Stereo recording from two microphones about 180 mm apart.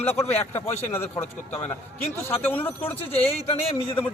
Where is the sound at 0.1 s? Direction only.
10° left (ahead or behind).